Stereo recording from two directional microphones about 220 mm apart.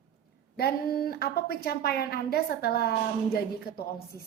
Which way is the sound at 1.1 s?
45° left (ahead or behind).